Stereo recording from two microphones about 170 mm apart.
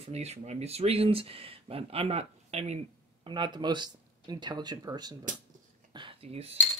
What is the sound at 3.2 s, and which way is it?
Speech, 25° right (ahead or behind).